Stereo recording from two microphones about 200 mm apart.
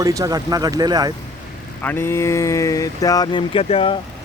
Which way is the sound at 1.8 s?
10° left (ahead or behind).